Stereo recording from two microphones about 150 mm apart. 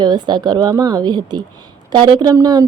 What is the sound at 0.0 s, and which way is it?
A woman's voice, 30° right (ahead or behind).